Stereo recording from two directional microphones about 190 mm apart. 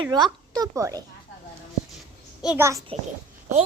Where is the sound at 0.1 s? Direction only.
20° right (ahead or behind).